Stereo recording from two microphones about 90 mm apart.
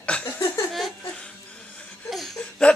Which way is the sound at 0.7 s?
Centre (ahead or behind).